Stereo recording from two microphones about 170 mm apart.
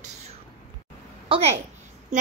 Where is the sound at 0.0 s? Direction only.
40° right (ahead or behind).